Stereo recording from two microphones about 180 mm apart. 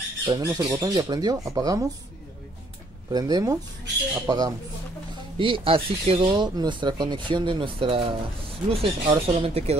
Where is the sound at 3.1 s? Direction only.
20° right (ahead or behind).